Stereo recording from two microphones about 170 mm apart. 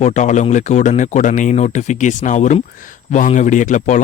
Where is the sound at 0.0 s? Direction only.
45° left (ahead or behind).